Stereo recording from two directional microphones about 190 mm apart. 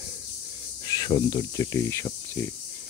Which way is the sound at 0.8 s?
20° left (ahead or behind).